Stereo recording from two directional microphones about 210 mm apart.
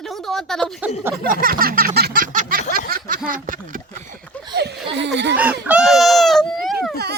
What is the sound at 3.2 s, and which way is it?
Speech, 40° right (ahead or behind).